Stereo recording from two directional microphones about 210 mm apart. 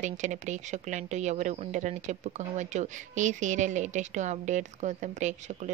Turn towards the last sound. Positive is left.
turn(degrees=-35)  # may be behind; listen again after turning